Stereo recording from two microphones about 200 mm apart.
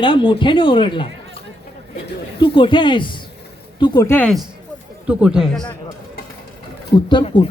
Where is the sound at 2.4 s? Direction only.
25° left (ahead or behind); by 4.4 s 10° left (ahead or behind).